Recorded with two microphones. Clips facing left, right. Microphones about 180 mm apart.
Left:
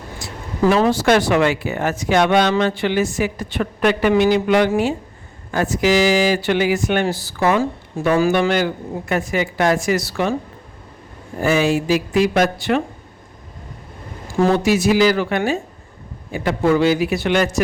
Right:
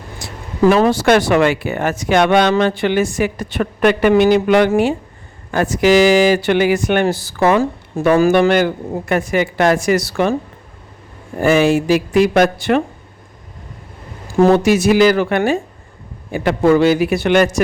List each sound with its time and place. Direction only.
0.7 s speech: 60° right (ahead or behind)
11.3 s speech: 60° right (ahead or behind)
14.3 s speech: 50° right (ahead or behind)